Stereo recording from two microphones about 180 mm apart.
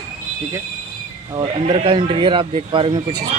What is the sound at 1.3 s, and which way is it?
Speech, 25° right (ahead or behind).